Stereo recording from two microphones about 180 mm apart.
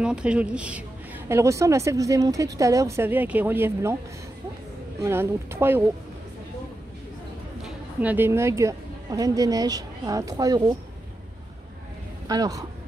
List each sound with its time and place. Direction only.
0.0 s a woman's voice: 5° right (ahead or behind)
5.0 s a woman's voice: 15° right (ahead or behind)
7.6 s a woman's voice: 10° right (ahead or behind)
12.3 s speech: 20° right (ahead or behind)